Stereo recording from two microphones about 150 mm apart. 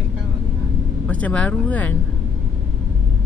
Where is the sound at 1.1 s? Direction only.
10° left (ahead or behind).